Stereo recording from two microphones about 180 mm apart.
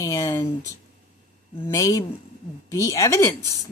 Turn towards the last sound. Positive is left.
turn(degrees=15)  # may be behind; listen again after turning